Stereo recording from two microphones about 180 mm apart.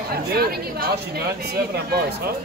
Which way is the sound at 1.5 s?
60° right (ahead or behind).